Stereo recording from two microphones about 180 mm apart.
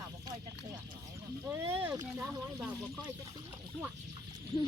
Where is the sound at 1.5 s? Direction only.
15° right (ahead or behind).